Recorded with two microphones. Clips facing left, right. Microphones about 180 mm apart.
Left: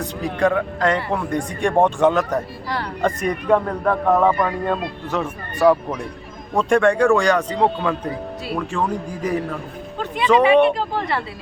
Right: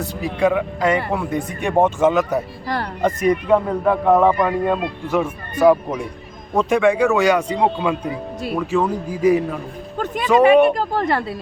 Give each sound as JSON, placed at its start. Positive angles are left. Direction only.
{"t": 0.0, "sound": "a man's voice", "side_deg": -10}
{"t": 10.3, "sound": "speech", "side_deg": -45}